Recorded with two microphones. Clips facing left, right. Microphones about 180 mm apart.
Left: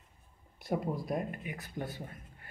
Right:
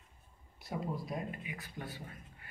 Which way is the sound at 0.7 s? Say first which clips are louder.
Left 5 dB; 55° left (ahead or behind).